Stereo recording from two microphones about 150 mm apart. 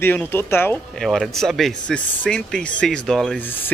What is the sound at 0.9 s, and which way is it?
Speech, centre (ahead or behind).